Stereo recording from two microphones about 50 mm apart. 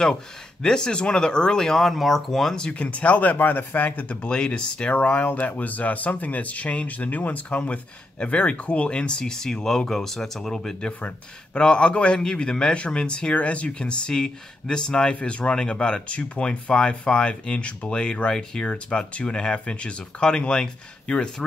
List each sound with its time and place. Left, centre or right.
0.0 s speech: centre
2.5 s speech: left
10.9 s speech: left
18.7 s speech: left